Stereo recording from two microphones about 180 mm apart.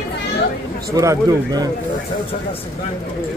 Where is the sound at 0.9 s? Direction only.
20° right (ahead or behind).